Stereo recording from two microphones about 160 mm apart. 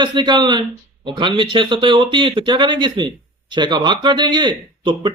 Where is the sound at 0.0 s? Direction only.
30° right (ahead or behind).